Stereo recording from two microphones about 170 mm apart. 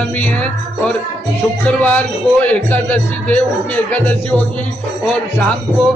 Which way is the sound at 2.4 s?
10° left (ahead or behind).